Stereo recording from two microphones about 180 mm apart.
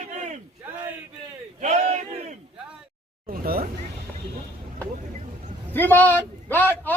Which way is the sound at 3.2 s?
55° right (ahead or behind).